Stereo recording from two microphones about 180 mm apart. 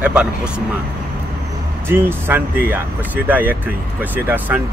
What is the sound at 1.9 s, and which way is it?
Speech, 10° right (ahead or behind).